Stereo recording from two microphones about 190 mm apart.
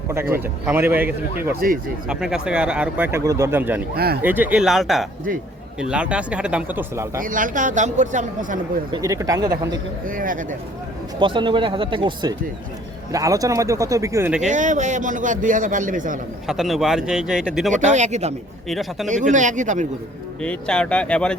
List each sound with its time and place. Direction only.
0.3 s speech: 10° right (ahead or behind)
3.9 s speech: 55° right (ahead or behind)
4.2 s speech: 10° right (ahead or behind)
7.2 s a man's voice: 45° right (ahead or behind)
8.9 s speech: 15° right (ahead or behind)
10.1 s a man's voice: 45° right (ahead or behind)
11.2 s speech: 25° right (ahead or behind)
14.4 s a man's voice: 40° right (ahead or behind)
16.5 s speech: centre (ahead or behind)
17.7 s a man's voice: 40° right (ahead or behind)
18.7 s speech: centre (ahead or behind)
19.0 s a man's voice: 40° right (ahead or behind)
20.4 s speech: 5° left (ahead or behind)